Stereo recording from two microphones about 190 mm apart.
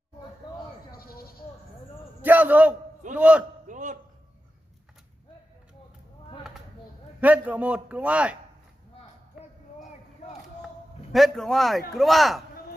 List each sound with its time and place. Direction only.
0.9 s goat: 50° left (ahead or behind)
2.2 s a man's voice: 10° right (ahead or behind)
3.6 s a sound: 40° right (ahead or behind)
7.2 s a man's voice: 10° right (ahead or behind)
10.6 s a sound: centre (ahead or behind)
11.9 s speech: centre (ahead or behind)